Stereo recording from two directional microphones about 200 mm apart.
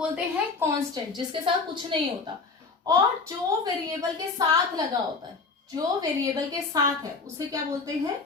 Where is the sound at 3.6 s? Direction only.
20° right (ahead or behind).